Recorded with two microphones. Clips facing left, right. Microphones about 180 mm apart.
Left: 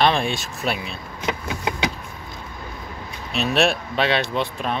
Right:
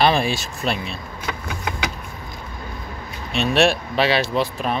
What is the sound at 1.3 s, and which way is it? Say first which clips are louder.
Vehicle: left 3 dB; 20° left (ahead or behind).